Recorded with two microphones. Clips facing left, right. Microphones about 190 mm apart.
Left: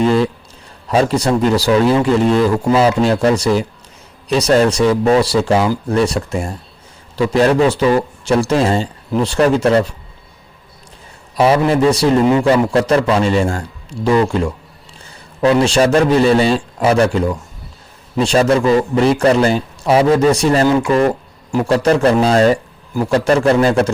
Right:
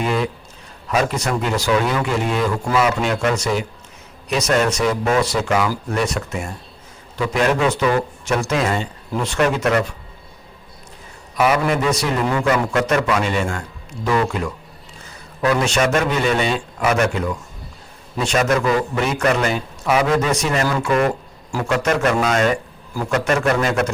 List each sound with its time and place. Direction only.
0.0 s speech: 30° left (ahead or behind)
11.3 s speech: 30° left (ahead or behind)